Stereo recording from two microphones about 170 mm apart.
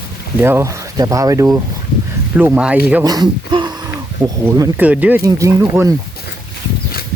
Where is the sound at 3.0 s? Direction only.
25° right (ahead or behind).